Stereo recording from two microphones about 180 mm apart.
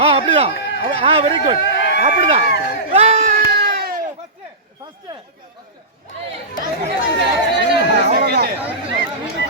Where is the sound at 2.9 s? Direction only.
35° right (ahead or behind).